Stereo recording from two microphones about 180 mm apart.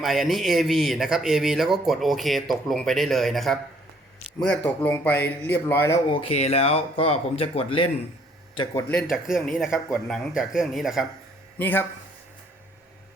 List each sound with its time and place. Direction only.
0.0 s speech: centre (ahead or behind)
6.1 s speech: 35° left (ahead or behind)
8.9 s speech: centre (ahead or behind)
11.5 s speech: 10° left (ahead or behind)